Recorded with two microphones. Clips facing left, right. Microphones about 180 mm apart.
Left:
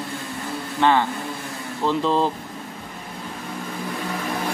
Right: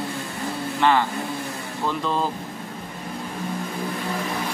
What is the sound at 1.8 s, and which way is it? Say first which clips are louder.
Speech: left 4 dB; 25° left (ahead or behind).